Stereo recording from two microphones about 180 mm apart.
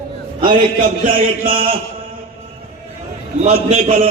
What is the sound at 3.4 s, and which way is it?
Speech, 35° right (ahead or behind).